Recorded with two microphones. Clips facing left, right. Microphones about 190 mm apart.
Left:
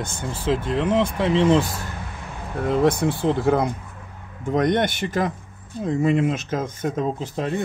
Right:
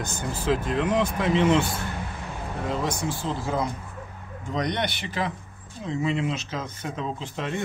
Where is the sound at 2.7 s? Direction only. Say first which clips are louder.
Left 10 dB; 60° left (ahead or behind).